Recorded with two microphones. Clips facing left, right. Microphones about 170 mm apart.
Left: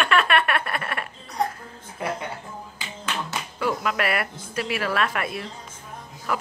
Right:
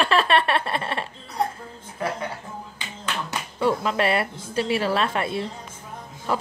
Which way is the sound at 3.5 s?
30° right (ahead or behind).